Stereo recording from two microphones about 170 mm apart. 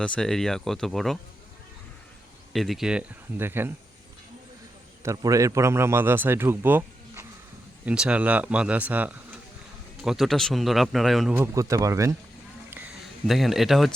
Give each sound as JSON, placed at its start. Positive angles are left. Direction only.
{"t": 0.0, "sound": "speech", "side_deg": 5}
{"t": 2.5, "sound": "speech", "side_deg": 0}
{"t": 5.0, "sound": "a man's voice", "side_deg": -20}
{"t": 11.3, "sound": "speech", "side_deg": -20}
{"t": 13.2, "sound": "speech", "side_deg": 0}